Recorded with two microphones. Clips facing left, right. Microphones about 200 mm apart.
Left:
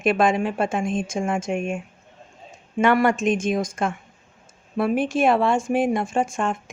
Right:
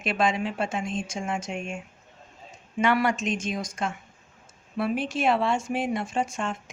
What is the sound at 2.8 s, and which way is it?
Speech, 50° left (ahead or behind).